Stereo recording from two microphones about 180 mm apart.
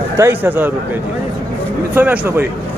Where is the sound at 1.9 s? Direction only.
10° right (ahead or behind).